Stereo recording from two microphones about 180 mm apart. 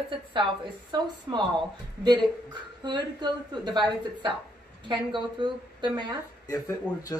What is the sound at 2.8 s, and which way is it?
A woman's voice, 25° right (ahead or behind).